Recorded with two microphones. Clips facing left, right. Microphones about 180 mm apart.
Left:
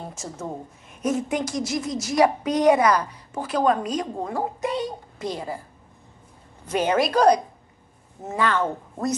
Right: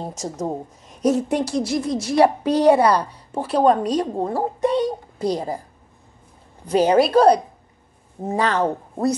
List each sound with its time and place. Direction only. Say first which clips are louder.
0.0 s a woman's voice: right 7 dB; 40° right (ahead or behind)
6.7 s a woman's voice: right 6 dB; 35° right (ahead or behind)